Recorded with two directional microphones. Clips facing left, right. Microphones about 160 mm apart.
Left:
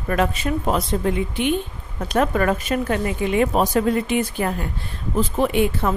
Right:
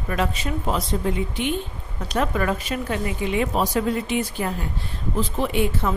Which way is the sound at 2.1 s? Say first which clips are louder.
Left 4 dB; 50° left (ahead or behind).